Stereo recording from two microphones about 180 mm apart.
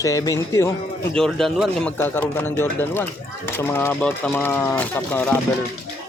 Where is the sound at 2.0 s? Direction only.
10° left (ahead or behind).